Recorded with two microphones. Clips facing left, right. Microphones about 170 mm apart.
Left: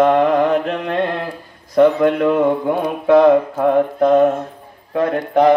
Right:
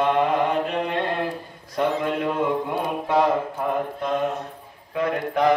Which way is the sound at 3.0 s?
90° left.